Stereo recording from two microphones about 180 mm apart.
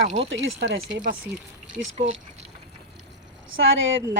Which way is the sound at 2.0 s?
35° right (ahead or behind).